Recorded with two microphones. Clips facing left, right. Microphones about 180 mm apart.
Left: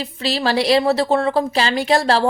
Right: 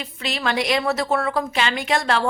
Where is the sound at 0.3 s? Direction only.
35° left (ahead or behind).